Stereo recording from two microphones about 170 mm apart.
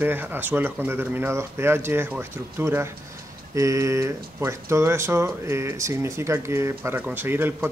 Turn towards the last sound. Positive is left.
turn(degrees=-10)  # may be behind; listen again after turning